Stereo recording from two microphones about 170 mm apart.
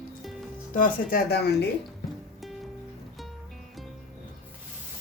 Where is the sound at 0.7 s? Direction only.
55° left (ahead or behind).